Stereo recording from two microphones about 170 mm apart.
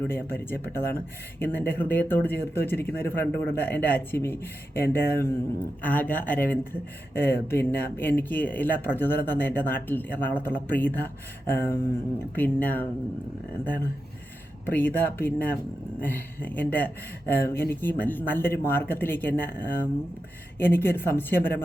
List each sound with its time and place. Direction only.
0.1 s speech: 15° left (ahead or behind)
14.7 s speech: 10° left (ahead or behind)